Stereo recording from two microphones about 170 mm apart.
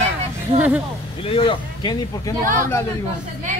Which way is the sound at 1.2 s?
30° left (ahead or behind).